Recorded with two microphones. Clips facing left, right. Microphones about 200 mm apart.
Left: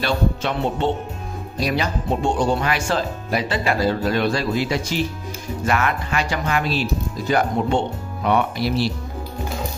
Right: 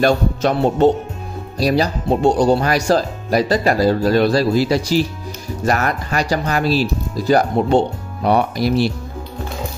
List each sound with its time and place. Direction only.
0.0 s music: 45° right (ahead or behind)
1.6 s speech: 35° right (ahead or behind)